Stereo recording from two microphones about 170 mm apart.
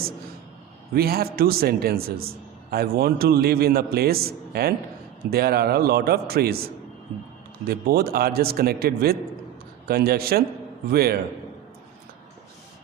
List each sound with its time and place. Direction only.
0.9 s a man's voice: 65° right (ahead or behind)
7.7 s a man's voice: 65° right (ahead or behind)